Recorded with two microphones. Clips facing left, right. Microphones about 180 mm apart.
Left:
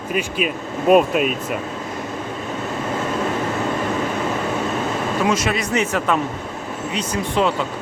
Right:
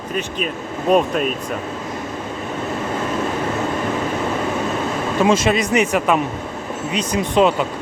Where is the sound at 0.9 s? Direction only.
5° left (ahead or behind).